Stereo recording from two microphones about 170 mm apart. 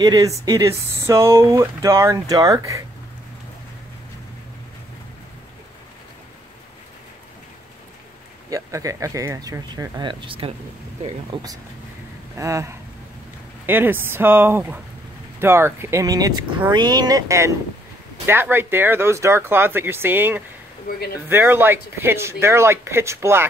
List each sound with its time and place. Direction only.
0.0 s speech: 20° right (ahead or behind)
8.5 s speech: 20° right (ahead or behind)
12.4 s speech: 20° right (ahead or behind)
20.9 s speech: 55° left (ahead or behind)
21.3 s speech: 15° right (ahead or behind)